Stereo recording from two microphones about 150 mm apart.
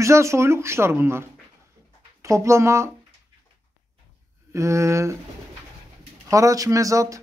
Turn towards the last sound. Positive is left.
turn(degrees=-20)  # may be behind; listen again after turning